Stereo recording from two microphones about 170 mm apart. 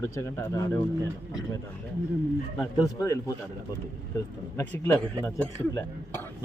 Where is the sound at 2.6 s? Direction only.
20° left (ahead or behind).